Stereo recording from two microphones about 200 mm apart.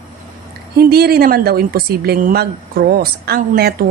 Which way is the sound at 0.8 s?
50° right (ahead or behind).